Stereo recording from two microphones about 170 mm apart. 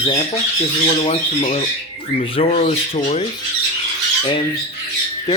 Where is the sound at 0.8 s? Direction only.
35° left (ahead or behind).